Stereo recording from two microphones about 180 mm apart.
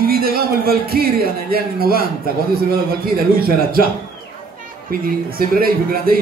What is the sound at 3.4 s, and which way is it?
Music, 55° right (ahead or behind).